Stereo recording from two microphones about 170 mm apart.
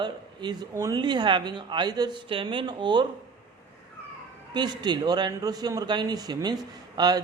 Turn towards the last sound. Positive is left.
turn(degrees=-25)  # may be behind; listen again after turning